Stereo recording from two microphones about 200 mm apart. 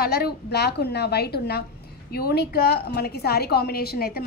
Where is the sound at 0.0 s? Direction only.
50° left (ahead or behind).